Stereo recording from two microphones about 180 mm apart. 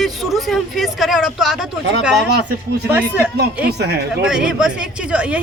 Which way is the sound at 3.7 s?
65° right (ahead or behind).